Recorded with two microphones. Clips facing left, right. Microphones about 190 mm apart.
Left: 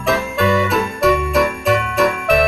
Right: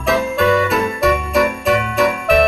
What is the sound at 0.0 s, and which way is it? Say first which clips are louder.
Jingle bell: right 2 dB; centre (ahead or behind).